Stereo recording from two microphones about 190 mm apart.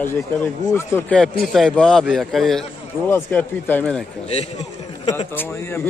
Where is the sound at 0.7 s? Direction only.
15° left (ahead or behind).